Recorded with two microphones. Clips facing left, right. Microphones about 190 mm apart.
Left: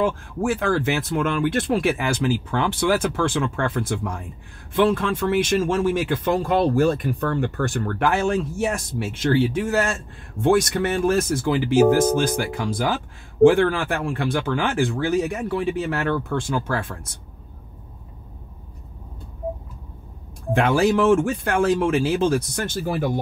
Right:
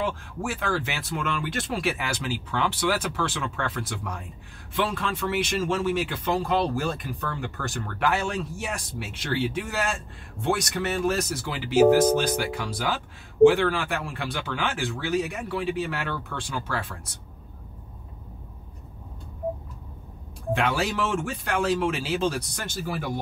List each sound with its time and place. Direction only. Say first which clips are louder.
0.0 s speech: left 7 dB; 50° left (ahead or behind)
20.5 s speech: left 8 dB; 50° left (ahead or behind)